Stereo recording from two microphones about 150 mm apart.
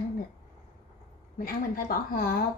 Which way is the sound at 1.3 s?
75° left (ahead or behind).